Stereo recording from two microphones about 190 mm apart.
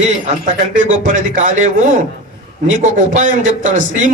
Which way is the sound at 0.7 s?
40° right (ahead or behind).